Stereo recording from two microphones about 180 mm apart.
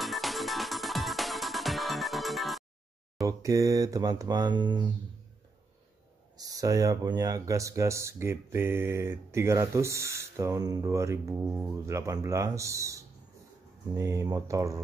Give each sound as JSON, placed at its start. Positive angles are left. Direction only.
{"t": 0.0, "sound": "music", "side_deg": 0}
{"t": 3.2, "sound": "speech", "side_deg": -20}
{"t": 6.3, "sound": "speech", "side_deg": -20}